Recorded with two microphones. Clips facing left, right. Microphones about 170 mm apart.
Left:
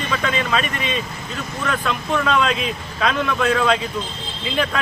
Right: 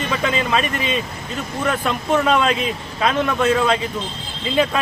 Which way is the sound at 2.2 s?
5° right (ahead or behind).